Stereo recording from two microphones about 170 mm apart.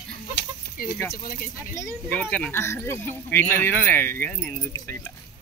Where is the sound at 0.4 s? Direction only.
80° left.